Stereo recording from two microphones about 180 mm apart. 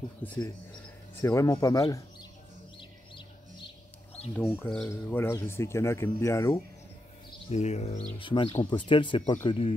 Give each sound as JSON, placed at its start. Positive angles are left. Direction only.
{"t": 0.2, "sound": "speech", "side_deg": 10}
{"t": 4.4, "sound": "speech", "side_deg": 15}
{"t": 7.4, "sound": "speech", "side_deg": 40}
{"t": 8.2, "sound": "speech", "side_deg": 30}